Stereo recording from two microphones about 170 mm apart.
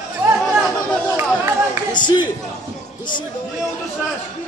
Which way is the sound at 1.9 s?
25° left (ahead or behind).